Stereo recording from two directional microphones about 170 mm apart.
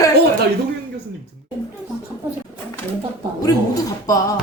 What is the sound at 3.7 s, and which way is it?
Speech, 20° left (ahead or behind).